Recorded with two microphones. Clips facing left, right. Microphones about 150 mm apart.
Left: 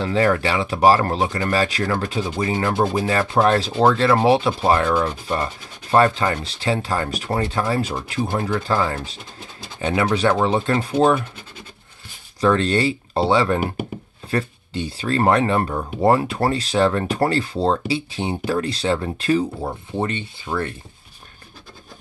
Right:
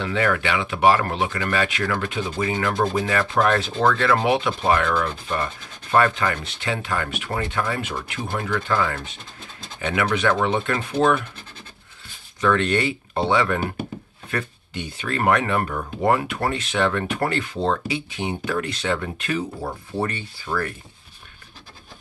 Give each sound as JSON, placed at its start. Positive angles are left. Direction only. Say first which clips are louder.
{"t": 0.0, "sound": "speech", "louder": "left 4 dB", "side_deg": 35}
{"t": 12.4, "sound": "speech", "louder": "left 2 dB", "side_deg": 35}
{"t": 19.6, "sound": "speech", "louder": "left 2 dB", "side_deg": 20}